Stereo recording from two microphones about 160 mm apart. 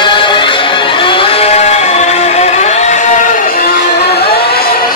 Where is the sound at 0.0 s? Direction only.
30° left (ahead or behind).